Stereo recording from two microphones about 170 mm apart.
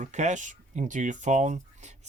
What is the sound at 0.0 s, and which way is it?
Speech, 45° right (ahead or behind).